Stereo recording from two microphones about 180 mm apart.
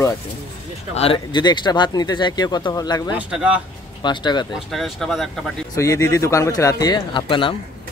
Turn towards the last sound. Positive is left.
turn(degrees=25)  # may be behind; listen again after turning